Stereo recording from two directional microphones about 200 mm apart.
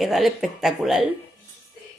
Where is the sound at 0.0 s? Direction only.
Centre (ahead or behind).